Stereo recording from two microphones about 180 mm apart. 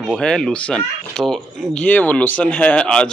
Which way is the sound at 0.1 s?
5° left (ahead or behind).